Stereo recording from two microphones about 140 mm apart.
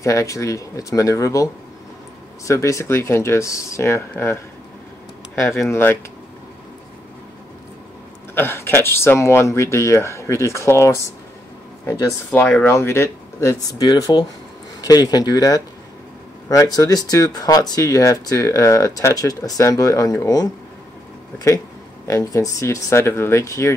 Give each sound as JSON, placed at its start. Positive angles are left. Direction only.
{"t": 0.0, "sound": "speech", "side_deg": 20}
{"t": 5.7, "sound": "speech", "side_deg": 15}
{"t": 8.4, "sound": "speech", "side_deg": 15}
{"t": 12.3, "sound": "speech", "side_deg": 10}
{"t": 22.0, "sound": "speech", "side_deg": 25}